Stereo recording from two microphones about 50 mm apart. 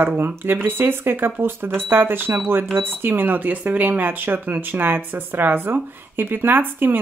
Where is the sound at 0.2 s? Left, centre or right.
Right.